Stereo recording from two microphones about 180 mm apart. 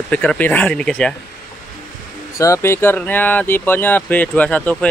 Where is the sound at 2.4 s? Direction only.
15° left (ahead or behind).